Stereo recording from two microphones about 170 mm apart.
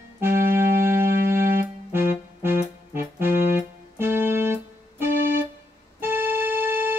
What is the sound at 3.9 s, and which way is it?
Keyboard, 15° right (ahead or behind).